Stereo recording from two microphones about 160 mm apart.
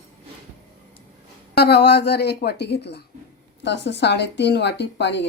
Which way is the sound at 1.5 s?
90° left.